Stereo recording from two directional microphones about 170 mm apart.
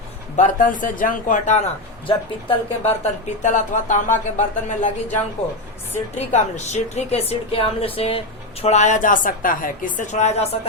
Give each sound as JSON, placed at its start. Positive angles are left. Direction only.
{"t": 0.3, "sound": "speech", "side_deg": 50}
{"t": 2.0, "sound": "speech", "side_deg": 35}
{"t": 6.1, "sound": "a woman's voice", "side_deg": 45}